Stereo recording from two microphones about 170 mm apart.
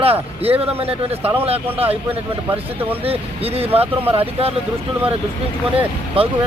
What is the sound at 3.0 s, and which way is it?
Speech, 35° right (ahead or behind).